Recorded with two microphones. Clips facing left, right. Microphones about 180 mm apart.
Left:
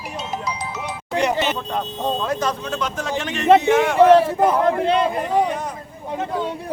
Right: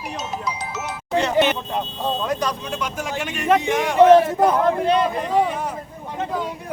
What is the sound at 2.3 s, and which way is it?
A man's voice, 15° right (ahead or behind).